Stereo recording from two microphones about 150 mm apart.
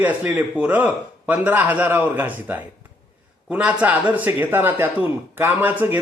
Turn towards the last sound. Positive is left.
turn(degrees=-15)  # may be behind; listen again after turning